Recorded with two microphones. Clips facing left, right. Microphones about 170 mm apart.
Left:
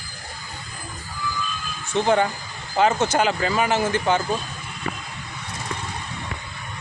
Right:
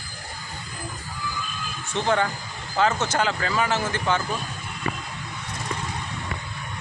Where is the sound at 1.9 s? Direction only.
15° left (ahead or behind).